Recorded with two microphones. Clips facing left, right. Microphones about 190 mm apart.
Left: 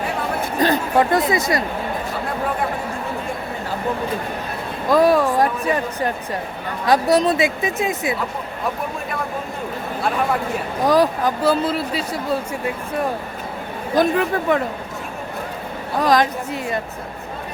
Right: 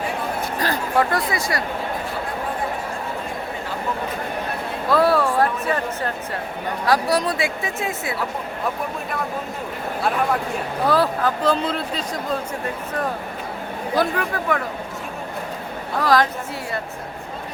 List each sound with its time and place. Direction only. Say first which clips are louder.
0.6 s speech: left 4 dB; 20° left (ahead or behind)
4.9 s speech: left 3 dB; 15° left (ahead or behind)
10.8 s speech: left 3 dB; 15° left (ahead or behind)
13.9 s speech: left 5 dB; 20° left (ahead or behind)
16.0 s speech: left 2 dB; 20° left (ahead or behind)